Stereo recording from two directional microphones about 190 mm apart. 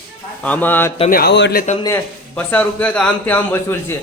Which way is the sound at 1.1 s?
55° left (ahead or behind).